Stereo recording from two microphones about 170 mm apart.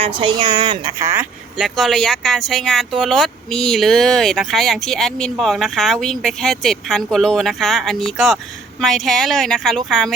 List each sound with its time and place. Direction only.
0.0 s speech: 30° right (ahead or behind)
1.0 s speech: 10° right (ahead or behind)